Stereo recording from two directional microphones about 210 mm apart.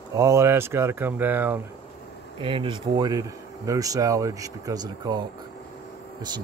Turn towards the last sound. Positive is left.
turn(degrees=-20)  # may be behind; listen again after turning